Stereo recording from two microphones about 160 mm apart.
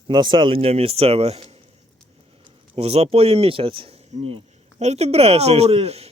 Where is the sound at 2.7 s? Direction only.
40° right (ahead or behind).